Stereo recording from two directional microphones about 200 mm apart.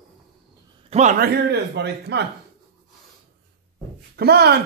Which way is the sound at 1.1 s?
50° right (ahead or behind).